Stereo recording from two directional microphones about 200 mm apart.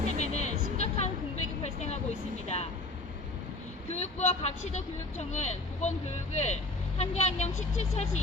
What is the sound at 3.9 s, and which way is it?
Speech, 35° left (ahead or behind).